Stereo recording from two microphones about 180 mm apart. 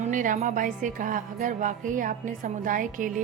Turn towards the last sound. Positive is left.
turn(degrees=-45)  # may be behind; listen again after turning